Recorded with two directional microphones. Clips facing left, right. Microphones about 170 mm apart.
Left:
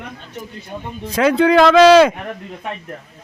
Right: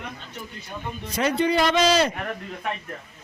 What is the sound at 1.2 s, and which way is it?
Speech, 90° left.